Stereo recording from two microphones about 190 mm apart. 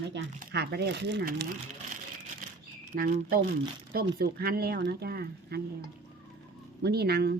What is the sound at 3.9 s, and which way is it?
Speech, 55° right (ahead or behind).